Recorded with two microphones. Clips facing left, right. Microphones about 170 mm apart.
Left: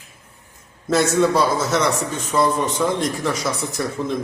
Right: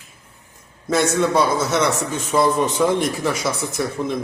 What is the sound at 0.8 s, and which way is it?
A man's voice, centre (ahead or behind).